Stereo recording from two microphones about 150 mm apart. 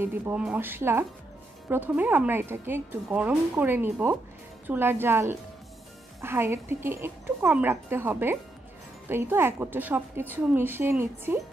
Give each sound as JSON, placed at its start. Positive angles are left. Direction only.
{"t": 0.0, "sound": "a woman's voice", "side_deg": -10}